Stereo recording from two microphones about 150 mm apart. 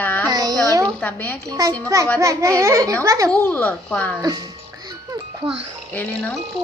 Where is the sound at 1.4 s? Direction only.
20° right (ahead or behind).